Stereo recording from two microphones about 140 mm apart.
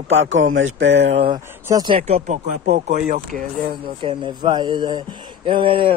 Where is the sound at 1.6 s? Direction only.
25° right (ahead or behind).